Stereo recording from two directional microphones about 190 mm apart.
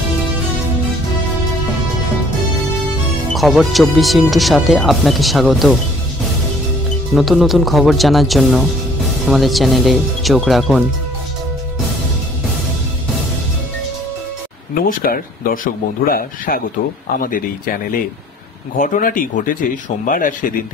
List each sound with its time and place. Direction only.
3.3 s speech: centre (ahead or behind)
7.2 s speech: centre (ahead or behind)
14.8 s speech: 50° left (ahead or behind)